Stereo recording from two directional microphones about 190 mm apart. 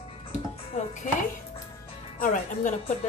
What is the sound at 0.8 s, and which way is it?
Music, 40° left (ahead or behind).